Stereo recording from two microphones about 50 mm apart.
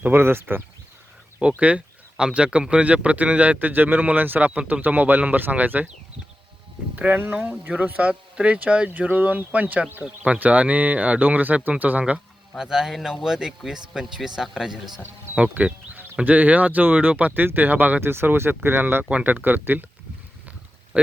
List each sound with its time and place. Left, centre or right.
0.0 s speech: right
1.4 s a sound: right
2.2 s a man's voice: right
6.9 s a man's voice: right
12.1 s a man's voice: centre
15.4 s speech: right
18.0 s speech: right
20.9 s speech: right